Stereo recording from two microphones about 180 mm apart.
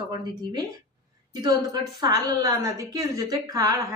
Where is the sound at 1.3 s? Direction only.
25° right (ahead or behind).